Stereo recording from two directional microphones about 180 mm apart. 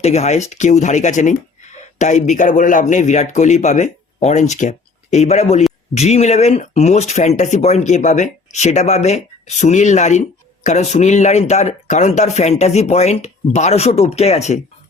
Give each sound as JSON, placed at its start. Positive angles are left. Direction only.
{"t": 0.0, "sound": "speech", "side_deg": 35}